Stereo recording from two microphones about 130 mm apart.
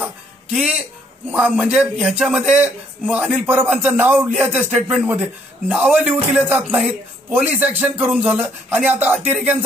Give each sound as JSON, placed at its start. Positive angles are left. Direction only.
{"t": 0.5, "sound": "a man's voice", "side_deg": -5}
{"t": 5.9, "sound": "a man's voice", "side_deg": -10}